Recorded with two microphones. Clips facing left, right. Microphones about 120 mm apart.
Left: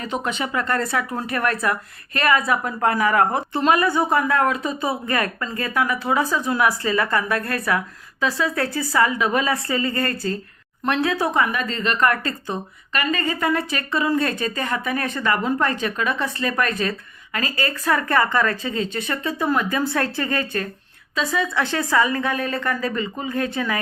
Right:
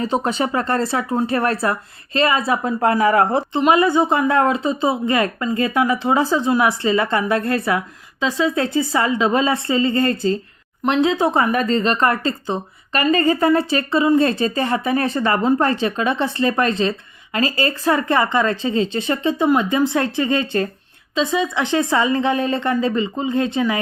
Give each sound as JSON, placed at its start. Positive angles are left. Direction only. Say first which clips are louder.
{"t": 0.0, "sound": "a woman's voice", "louder": "right 6 dB", "side_deg": -35}